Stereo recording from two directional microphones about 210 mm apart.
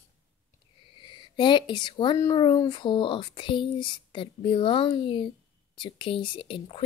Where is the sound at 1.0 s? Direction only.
20° left (ahead or behind).